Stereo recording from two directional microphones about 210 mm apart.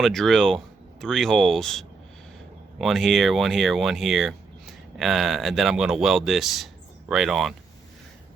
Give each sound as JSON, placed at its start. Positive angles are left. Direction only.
{"t": 0.0, "sound": "speech", "side_deg": 0}